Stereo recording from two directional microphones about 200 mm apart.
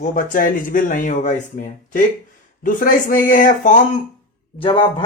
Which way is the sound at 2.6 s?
45° left (ahead or behind).